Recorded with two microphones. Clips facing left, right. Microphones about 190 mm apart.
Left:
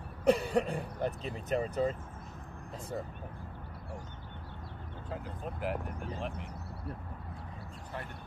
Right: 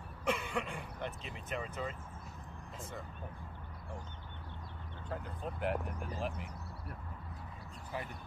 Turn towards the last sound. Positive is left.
turn(degrees=0)  # may be behind; listen again after turning